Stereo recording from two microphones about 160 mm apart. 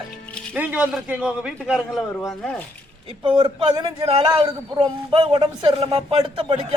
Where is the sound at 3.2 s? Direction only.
30° right (ahead or behind).